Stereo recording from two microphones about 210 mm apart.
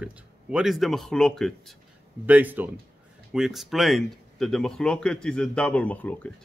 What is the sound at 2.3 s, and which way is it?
Speech, 10° right (ahead or behind).